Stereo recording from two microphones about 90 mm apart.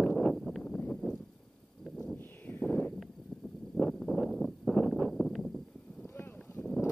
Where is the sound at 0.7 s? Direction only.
15° left (ahead or behind).